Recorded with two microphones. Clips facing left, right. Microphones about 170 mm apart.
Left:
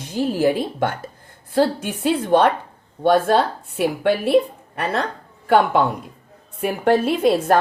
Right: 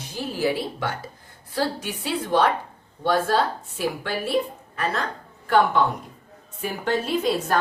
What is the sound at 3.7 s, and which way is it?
Speech, 60° left (ahead or behind).